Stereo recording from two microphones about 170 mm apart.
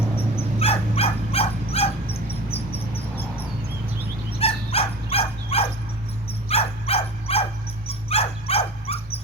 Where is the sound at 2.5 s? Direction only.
35° left (ahead or behind).